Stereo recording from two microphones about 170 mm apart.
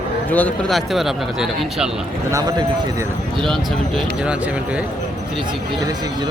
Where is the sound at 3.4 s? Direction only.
Centre (ahead or behind).